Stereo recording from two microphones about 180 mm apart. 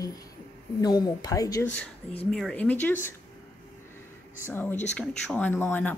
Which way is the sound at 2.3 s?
5° left (ahead or behind).